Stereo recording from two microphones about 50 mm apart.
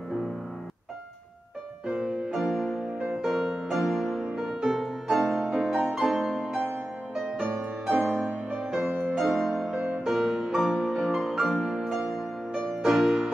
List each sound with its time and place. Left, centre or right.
1.9 s music: centre
2.3 s music: centre
2.8 s music: right
3.2 s music: centre
7.8 s music: centre
9.8 s music: right
10.0 s music: centre